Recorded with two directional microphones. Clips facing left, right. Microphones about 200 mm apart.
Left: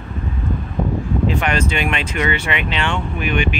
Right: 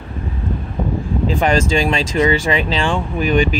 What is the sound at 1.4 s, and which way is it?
Speech, 30° right (ahead or behind).